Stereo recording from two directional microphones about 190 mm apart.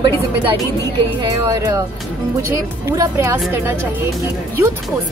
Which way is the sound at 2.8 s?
15° right (ahead or behind).